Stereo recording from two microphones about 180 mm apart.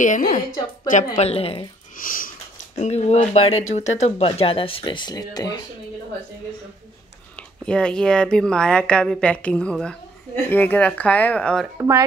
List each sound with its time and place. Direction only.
0.0 s a woman's voice: 45° left (ahead or behind)
1.1 s speech: 35° left (ahead or behind)
2.0 s wheeze: 50° left (ahead or behind)
2.8 s speech: 40° left (ahead or behind); by 5.7 s 20° left (ahead or behind)
7.6 s a woman's voice: 5° left (ahead or behind)